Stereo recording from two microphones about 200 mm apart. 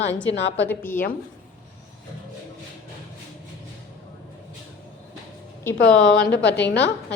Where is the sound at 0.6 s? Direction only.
10° left (ahead or behind).